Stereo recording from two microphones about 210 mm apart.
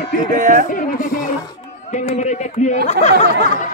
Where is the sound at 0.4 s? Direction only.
40° right (ahead or behind).